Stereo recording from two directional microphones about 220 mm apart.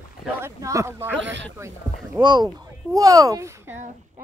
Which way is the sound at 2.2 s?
20° right (ahead or behind).